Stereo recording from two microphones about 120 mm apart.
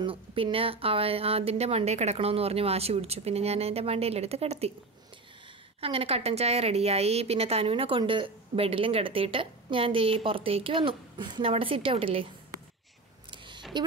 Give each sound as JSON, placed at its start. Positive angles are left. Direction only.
{"t": 0.0, "sound": "speech", "side_deg": -50}
{"t": 5.8, "sound": "a woman's voice", "side_deg": -55}
{"t": 13.7, "sound": "speech", "side_deg": -40}